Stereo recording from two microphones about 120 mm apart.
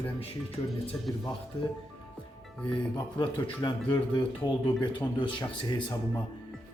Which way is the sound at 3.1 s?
40° left (ahead or behind).